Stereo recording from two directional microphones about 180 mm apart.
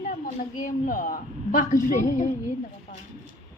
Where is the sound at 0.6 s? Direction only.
50° left (ahead or behind).